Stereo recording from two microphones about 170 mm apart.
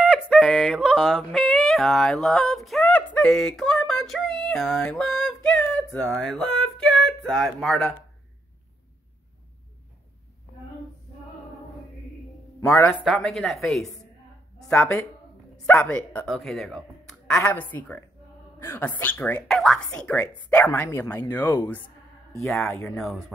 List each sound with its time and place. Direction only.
0.0 s yodeling: 5° right (ahead or behind)
5.9 s speech: 5° left (ahead or behind)
12.5 s speech: 15° left (ahead or behind)
22.9 s speech: centre (ahead or behind)